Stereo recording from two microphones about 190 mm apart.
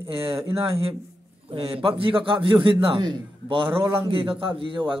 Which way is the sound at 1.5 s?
30° right (ahead or behind).